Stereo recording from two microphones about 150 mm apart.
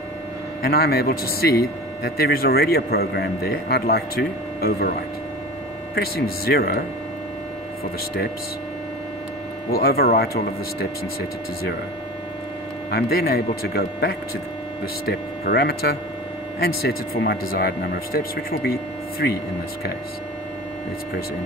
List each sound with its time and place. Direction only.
0.6 s a man's voice: 90° left
5.9 s a man's voice: 90° left
9.7 s a man's voice: 90° left
12.9 s a man's voice: 90° left